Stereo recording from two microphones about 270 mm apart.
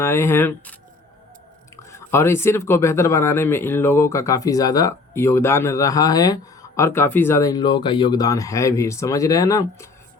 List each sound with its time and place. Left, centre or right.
0.0 s speech: centre